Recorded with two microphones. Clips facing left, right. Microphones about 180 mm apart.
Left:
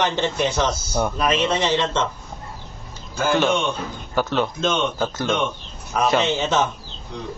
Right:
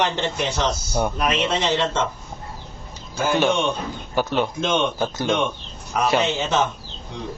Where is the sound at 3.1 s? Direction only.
10° right (ahead or behind).